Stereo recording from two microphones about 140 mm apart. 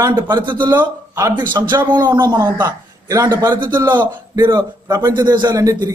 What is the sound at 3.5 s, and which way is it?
A man's voice, 30° right (ahead or behind).